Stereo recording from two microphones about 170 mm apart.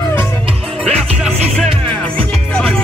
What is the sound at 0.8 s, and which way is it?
Music, 5° left (ahead or behind).